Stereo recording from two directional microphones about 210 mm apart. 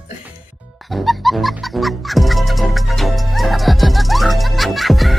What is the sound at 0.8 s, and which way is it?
Music, centre (ahead or behind).